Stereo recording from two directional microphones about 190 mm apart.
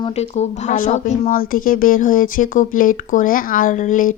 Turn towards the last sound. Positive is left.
turn(degrees=40)  # may be behind; listen again after turning